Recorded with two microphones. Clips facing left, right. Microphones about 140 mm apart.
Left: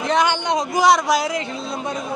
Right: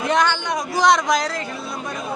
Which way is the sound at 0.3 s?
20° left (ahead or behind).